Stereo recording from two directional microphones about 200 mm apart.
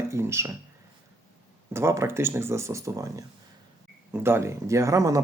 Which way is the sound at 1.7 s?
15° right (ahead or behind).